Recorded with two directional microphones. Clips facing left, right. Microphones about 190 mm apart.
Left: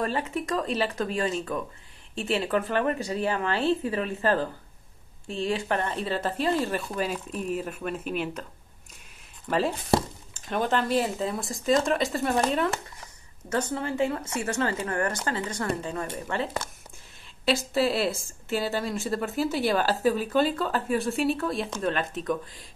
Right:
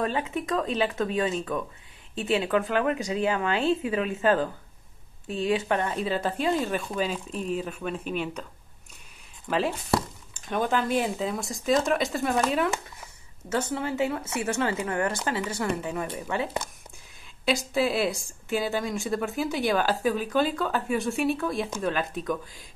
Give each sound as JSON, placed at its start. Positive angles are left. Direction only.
{"t": 0.0, "sound": "a woman's voice", "side_deg": 0}
{"t": 10.3, "sound": "a woman's voice", "side_deg": 0}
{"t": 17.5, "sound": "a woman's voice", "side_deg": 0}